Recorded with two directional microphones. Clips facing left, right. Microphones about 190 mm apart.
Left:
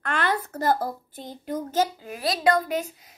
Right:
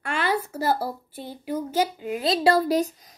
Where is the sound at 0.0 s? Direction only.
10° right (ahead or behind).